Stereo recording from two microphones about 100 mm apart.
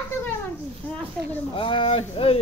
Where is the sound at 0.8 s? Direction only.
20° left (ahead or behind).